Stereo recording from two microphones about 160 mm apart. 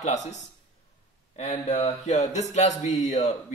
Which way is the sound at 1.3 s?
45° left (ahead or behind).